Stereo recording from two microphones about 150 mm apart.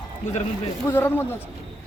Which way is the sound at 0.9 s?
15° left (ahead or behind).